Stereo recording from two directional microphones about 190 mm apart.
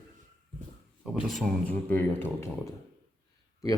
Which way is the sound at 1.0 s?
Centre (ahead or behind).